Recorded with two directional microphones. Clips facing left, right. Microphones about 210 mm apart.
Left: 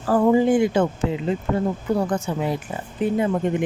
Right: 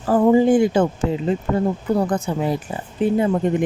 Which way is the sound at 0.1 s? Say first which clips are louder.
Right 3 dB; 25° right (ahead or behind).